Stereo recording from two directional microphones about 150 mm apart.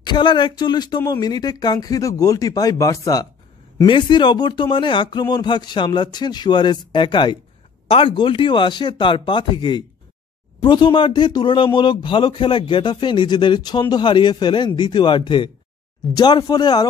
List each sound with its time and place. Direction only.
0.0 s speech: 30° left (ahead or behind)